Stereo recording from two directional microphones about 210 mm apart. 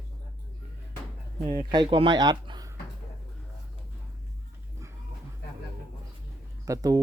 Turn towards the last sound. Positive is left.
turn(degrees=-15)  # may be behind; listen again after turning